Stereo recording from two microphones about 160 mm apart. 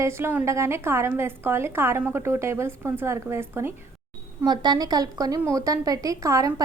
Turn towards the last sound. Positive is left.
turn(degrees=-20)  # may be behind; listen again after turning